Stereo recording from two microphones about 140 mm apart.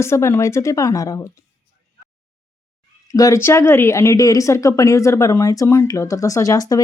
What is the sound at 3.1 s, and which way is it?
A woman's voice, 20° left (ahead or behind).